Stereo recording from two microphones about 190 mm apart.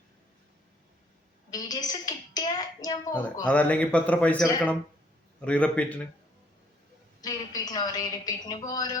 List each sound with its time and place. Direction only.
1.5 s a woman's voice: 20° left (ahead or behind)
3.4 s a man's voice: 5° left (ahead or behind)
5.5 s a man's voice: 5° left (ahead or behind)
7.2 s a woman's voice: 20° left (ahead or behind)